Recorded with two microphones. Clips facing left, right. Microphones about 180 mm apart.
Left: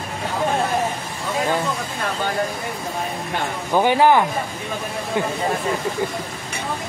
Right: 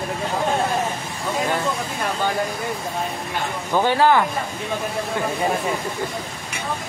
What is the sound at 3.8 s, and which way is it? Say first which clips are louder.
Speech: left 2 dB; 15° left (ahead or behind).